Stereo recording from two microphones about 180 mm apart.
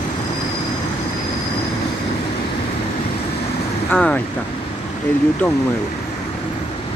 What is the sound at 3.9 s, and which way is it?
Speech, 5° left (ahead or behind).